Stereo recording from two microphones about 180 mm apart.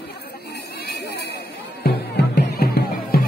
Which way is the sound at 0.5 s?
65° left (ahead or behind).